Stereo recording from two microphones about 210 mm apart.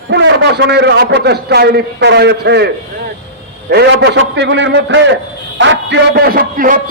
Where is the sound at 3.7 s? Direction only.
50° right (ahead or behind).